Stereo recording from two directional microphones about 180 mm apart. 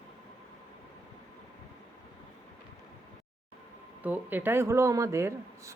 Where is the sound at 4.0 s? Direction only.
10° right (ahead or behind).